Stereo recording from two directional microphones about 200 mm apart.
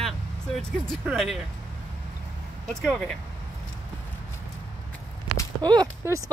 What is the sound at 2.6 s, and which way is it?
Speech, 5° left (ahead or behind).